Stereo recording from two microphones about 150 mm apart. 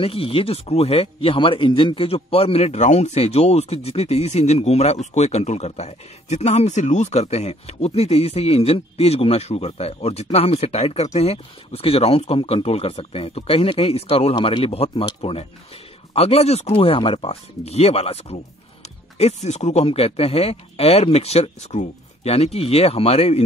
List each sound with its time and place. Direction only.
0.0 s speech: 40° left (ahead or behind)
16.1 s speech: 45° left (ahead or behind)